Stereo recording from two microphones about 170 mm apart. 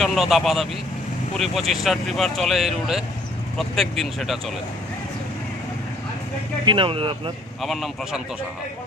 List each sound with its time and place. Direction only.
0.0 s speech: centre (ahead or behind)
6.7 s speech: 30° right (ahead or behind)
7.6 s speech: centre (ahead or behind)